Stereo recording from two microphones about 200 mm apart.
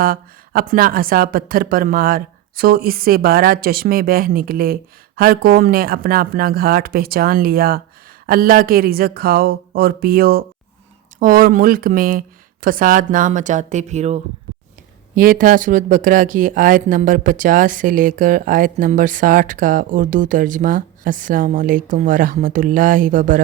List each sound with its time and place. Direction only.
0.0 s speech: 45° right (ahead or behind)
15.1 s speech: 45° right (ahead or behind)